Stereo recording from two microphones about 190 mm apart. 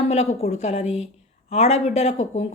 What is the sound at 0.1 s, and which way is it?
A woman's voice, 35° left (ahead or behind).